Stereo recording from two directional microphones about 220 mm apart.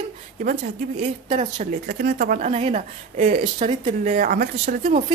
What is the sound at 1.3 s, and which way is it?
Speech, 30° right (ahead or behind).